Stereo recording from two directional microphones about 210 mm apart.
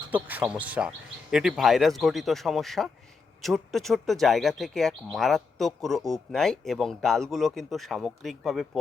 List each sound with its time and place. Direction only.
0.1 s speech: 10° right (ahead or behind)